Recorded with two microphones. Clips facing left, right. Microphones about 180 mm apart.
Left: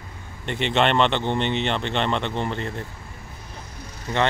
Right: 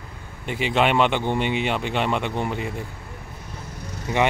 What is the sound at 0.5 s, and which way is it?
Speech, 5° right (ahead or behind).